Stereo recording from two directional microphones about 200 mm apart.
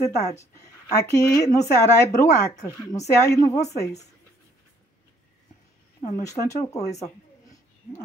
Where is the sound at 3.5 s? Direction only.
35° left (ahead or behind).